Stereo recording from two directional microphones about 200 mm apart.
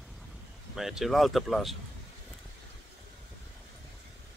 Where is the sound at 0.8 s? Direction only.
Centre (ahead or behind).